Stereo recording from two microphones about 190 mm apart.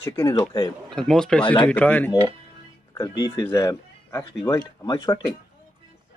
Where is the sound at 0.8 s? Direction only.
5° left (ahead or behind).